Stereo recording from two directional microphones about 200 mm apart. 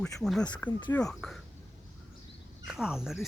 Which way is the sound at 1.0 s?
Centre (ahead or behind).